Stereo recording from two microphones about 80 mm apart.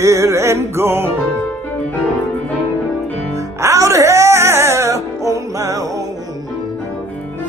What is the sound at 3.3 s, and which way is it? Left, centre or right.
Music, right.